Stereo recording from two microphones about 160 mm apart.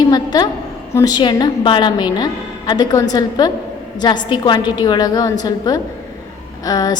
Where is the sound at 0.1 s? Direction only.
25° left (ahead or behind).